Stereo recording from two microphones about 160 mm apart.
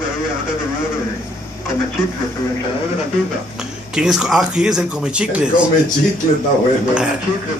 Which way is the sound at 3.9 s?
5° right (ahead or behind).